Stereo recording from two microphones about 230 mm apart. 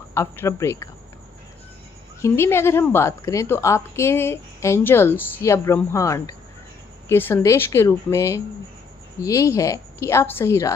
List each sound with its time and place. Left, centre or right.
0.1 s a woman's voice: centre
2.2 s a woman's voice: centre